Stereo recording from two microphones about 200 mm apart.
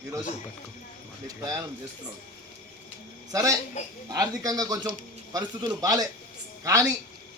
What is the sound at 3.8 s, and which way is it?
Speech, 35° left (ahead or behind).